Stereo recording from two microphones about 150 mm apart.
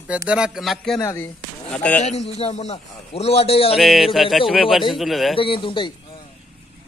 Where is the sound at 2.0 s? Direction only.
45° left (ahead or behind).